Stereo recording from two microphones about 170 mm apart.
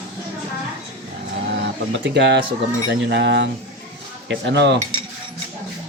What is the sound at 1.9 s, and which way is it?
Speech, 90° right.